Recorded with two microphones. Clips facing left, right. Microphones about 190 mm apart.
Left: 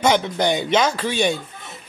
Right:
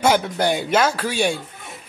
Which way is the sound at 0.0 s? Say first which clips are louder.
Even; 5° right (ahead or behind).